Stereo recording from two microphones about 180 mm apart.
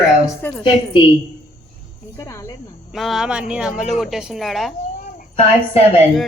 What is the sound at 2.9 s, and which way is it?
A woman's voice, centre (ahead or behind).